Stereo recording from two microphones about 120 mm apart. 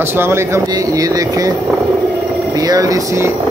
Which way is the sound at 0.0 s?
20° right (ahead or behind).